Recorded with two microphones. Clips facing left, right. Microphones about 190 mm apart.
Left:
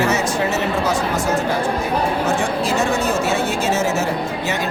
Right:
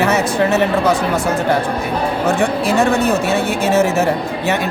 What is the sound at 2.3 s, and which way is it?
Speech, 60° right (ahead or behind).